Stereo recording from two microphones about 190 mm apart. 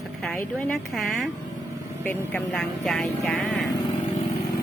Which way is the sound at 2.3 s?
5° left (ahead or behind).